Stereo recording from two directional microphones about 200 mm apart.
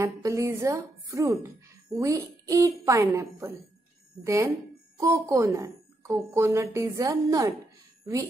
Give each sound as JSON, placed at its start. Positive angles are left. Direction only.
{"t": 0.0, "sound": "speech", "side_deg": -15}